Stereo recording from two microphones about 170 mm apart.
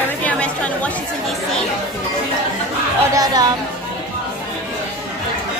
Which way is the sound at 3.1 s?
20° right (ahead or behind).